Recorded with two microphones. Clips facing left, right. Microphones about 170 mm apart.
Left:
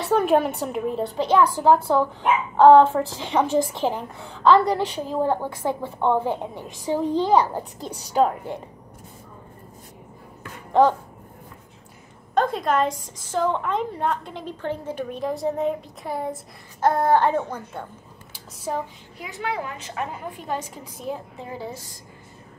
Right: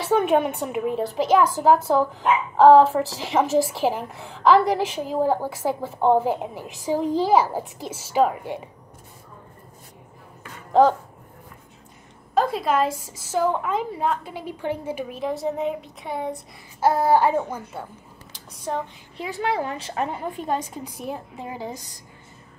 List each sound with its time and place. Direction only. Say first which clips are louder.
0.0 s a woman's voice: even; centre (ahead or behind)
10.7 s a sound: right 1 dB; 5° right (ahead or behind)
12.4 s a woman's voice: even; 5° right (ahead or behind)
18.3 s speech: even; 10° left (ahead or behind)
19.1 s a woman's voice: right 4 dB; 30° right (ahead or behind); by 21.9 s 15° right (ahead or behind)